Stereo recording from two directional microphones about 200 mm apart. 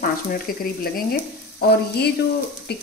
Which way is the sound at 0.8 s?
50° left (ahead or behind).